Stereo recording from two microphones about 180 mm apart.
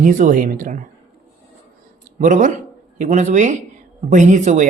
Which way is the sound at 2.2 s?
45° right (ahead or behind).